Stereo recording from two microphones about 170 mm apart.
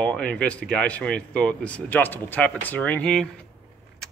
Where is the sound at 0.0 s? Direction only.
5° left (ahead or behind).